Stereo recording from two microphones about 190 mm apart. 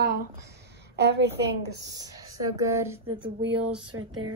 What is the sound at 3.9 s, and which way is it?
Speech, 90° right.